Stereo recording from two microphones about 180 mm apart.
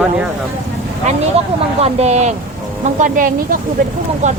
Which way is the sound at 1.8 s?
35° right (ahead or behind).